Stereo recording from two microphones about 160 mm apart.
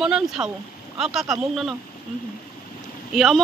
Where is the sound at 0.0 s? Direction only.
5° right (ahead or behind).